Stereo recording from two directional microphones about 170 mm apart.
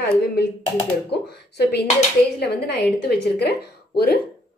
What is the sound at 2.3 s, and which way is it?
Speech, 70° left (ahead or behind).